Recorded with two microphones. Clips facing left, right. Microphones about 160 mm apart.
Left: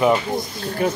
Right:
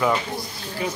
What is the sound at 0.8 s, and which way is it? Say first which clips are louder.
Speech: left 7 dB; 55° left (ahead or behind).